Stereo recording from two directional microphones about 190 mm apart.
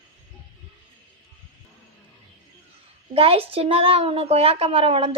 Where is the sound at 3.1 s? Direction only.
30° right (ahead or behind).